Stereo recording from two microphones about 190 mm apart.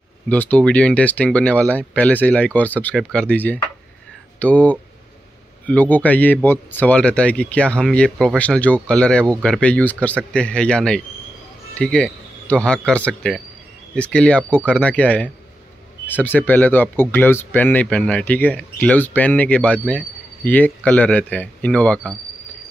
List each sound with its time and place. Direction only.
0.3 s speech: 5° left (ahead or behind)